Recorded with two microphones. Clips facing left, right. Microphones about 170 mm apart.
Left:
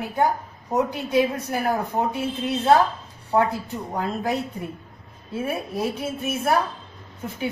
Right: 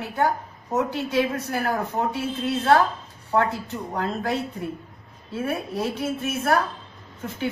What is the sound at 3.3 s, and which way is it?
Speech, 25° left (ahead or behind).